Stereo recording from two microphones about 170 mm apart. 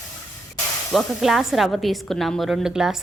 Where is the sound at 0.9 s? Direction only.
Centre (ahead or behind).